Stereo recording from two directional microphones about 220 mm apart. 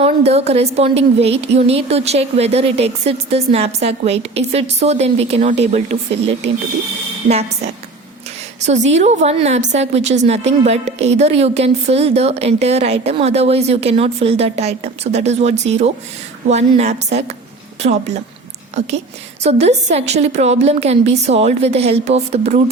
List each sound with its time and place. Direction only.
0.0 s a woman's voice: 30° right (ahead or behind)
8.6 s a woman's voice: 30° right (ahead or behind)
19.4 s a woman's voice: 30° right (ahead or behind)